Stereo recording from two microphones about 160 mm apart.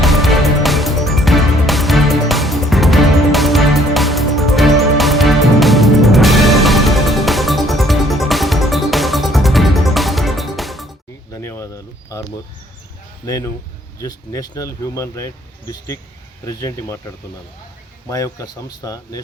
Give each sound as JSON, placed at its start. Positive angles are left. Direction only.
{"t": 0.0, "sound": "music", "side_deg": 0}
{"t": 11.3, "sound": "bird", "side_deg": 15}
{"t": 13.2, "sound": "speech", "side_deg": 20}